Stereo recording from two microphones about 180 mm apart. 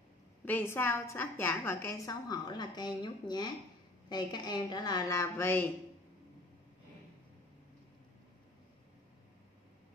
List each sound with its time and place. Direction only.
0.5 s a woman's voice: 10° left (ahead or behind)